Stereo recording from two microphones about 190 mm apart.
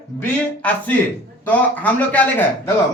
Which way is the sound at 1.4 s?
10° left (ahead or behind).